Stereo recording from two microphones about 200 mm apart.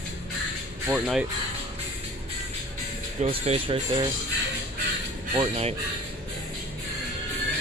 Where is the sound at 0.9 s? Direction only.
5° right (ahead or behind).